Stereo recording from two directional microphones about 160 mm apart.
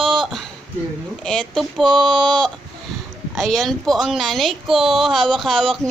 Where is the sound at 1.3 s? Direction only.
5° left (ahead or behind).